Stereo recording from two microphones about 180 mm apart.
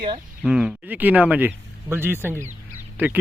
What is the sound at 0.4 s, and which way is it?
Speech, centre (ahead or behind).